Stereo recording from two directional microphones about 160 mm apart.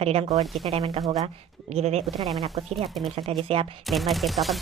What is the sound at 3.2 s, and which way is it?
Speech, 35° right (ahead or behind).